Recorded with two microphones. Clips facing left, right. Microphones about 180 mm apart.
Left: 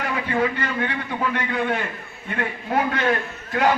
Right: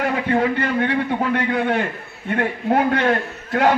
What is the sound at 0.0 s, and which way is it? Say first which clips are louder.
A man's voice: right 4 dB; 55° right (ahead or behind).